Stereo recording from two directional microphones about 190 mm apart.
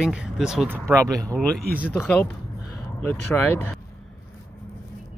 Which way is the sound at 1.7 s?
5° right (ahead or behind).